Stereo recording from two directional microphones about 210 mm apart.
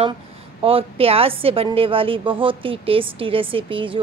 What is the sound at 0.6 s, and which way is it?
A woman's voice, 25° right (ahead or behind).